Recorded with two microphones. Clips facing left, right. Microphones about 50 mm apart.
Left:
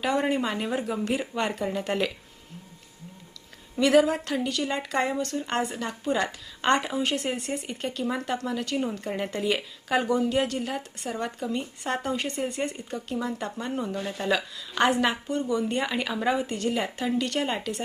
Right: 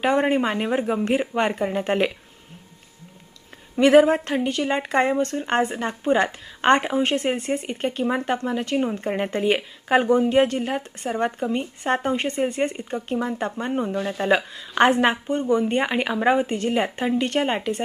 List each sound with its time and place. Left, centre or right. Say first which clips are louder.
0.0 s speech: right 5 dB; right
3.8 s speech: right 6 dB; right